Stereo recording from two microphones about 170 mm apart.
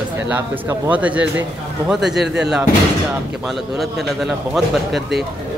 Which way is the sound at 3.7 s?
Centre (ahead or behind).